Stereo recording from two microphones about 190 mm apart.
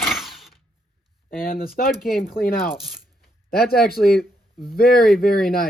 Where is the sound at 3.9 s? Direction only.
55° left (ahead or behind).